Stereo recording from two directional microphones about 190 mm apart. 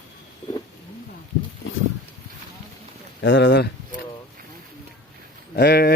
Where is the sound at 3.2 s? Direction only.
70° left (ahead or behind).